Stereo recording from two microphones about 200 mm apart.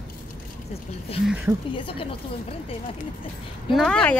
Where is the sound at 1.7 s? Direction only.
25° left (ahead or behind).